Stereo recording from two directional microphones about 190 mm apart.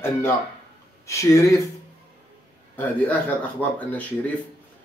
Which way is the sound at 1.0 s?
15° left (ahead or behind).